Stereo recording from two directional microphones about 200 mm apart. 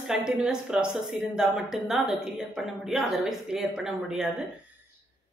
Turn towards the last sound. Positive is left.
turn(degrees=-5)  # may be behind; listen again after turning